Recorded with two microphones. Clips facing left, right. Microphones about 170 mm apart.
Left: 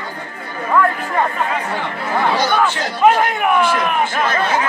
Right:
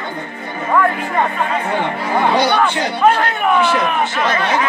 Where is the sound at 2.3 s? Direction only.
70° right (ahead or behind).